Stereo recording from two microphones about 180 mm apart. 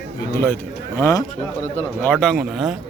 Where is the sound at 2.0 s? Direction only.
5° left (ahead or behind).